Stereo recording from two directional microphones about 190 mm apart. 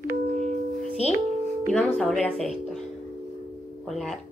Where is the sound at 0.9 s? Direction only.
35° left (ahead or behind).